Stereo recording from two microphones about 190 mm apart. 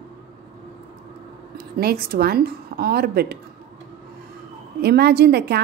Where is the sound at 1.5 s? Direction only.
55° right (ahead or behind).